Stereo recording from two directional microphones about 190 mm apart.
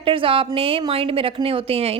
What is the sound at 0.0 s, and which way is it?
A woman's voice, 30° right (ahead or behind).